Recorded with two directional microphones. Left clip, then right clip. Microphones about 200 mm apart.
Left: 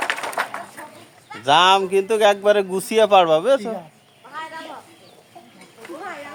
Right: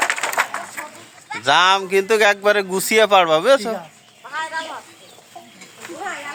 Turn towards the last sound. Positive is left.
turn(degrees=-5)  # may be behind; listen again after turning